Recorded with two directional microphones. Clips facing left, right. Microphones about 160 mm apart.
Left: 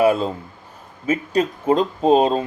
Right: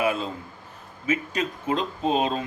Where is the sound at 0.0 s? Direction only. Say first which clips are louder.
Left 8 dB; 40° left (ahead or behind).